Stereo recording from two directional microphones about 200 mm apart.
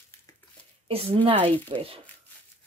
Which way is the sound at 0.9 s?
30° right (ahead or behind).